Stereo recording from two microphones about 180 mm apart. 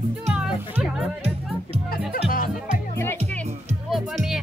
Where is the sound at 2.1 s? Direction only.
50° left (ahead or behind).